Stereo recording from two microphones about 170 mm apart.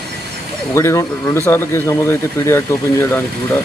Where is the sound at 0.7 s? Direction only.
15° left (ahead or behind).